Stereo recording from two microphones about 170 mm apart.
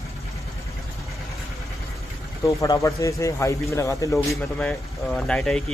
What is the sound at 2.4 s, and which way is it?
Speech, 20° left (ahead or behind).